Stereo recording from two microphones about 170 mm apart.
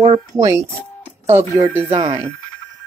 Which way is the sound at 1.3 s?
15° right (ahead or behind).